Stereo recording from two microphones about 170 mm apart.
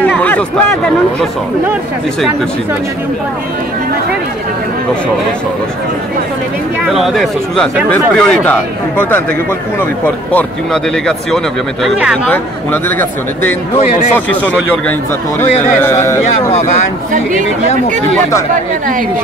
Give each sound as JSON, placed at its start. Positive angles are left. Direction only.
{"t": 0.0, "sound": "a sound", "side_deg": 10}
{"t": 6.9, "sound": "speech", "side_deg": 0}
{"t": 10.3, "sound": "speech", "side_deg": 5}
{"t": 12.3, "sound": "speech", "side_deg": 10}
{"t": 18.5, "sound": "speech", "side_deg": -50}